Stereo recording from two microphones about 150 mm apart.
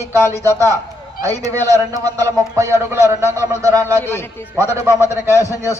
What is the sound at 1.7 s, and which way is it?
A man's voice, 25° right (ahead or behind).